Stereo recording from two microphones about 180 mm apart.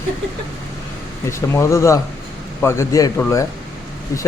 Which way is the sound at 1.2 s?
15° left (ahead or behind).